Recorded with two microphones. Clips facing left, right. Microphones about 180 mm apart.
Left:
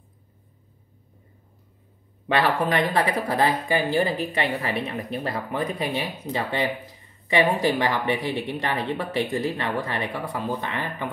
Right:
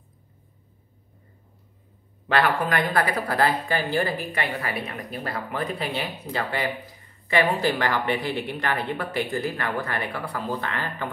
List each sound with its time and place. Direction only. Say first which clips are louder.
2.4 s speech: left 2 dB; 25° left (ahead or behind)